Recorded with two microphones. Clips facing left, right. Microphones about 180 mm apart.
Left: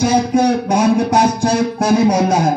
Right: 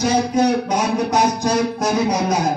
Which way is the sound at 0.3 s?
50° left (ahead or behind).